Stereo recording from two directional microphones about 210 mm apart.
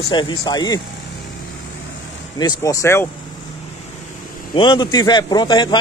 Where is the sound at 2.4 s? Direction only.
15° left (ahead or behind).